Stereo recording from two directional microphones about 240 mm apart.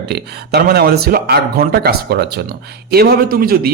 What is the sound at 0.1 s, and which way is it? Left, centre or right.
A man's voice, right.